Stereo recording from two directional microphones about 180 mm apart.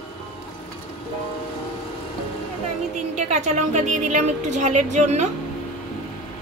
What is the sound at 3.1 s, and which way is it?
A woman's voice, 40° right (ahead or behind).